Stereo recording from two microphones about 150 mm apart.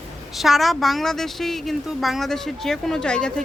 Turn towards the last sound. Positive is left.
turn(degrees=5)  # may be behind; listen again after turning